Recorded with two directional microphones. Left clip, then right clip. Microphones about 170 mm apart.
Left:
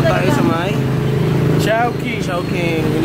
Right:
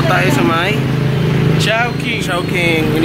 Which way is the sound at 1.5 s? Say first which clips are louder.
Right 1 dB; 45° left (ahead or behind).